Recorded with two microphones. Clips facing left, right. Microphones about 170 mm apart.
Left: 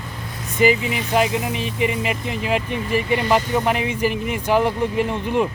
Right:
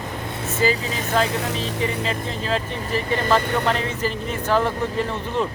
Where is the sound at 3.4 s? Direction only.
65° right (ahead or behind).